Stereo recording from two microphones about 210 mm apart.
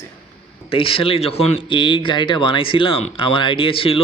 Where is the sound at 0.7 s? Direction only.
25° left (ahead or behind).